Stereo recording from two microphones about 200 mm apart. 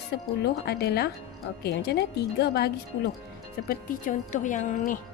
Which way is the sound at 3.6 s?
45° left (ahead or behind).